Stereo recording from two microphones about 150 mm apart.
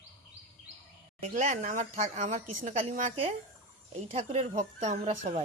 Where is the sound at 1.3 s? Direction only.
60° right (ahead or behind).